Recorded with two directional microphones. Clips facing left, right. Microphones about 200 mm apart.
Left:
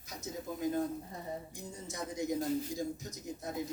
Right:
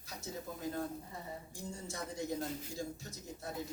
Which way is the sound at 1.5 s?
20° left (ahead or behind).